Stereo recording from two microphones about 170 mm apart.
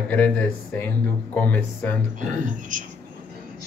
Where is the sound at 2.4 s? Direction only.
50° right (ahead or behind).